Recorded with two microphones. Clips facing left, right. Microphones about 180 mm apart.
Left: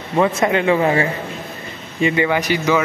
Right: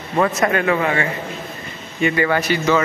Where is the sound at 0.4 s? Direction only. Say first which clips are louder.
Left 2 dB; 25° left (ahead or behind).